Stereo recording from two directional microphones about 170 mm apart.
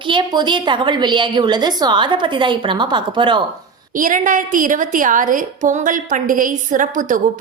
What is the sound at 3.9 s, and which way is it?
A woman's voice, 50° right (ahead or behind).